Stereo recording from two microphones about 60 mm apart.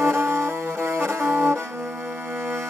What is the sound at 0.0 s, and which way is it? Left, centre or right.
Music, right.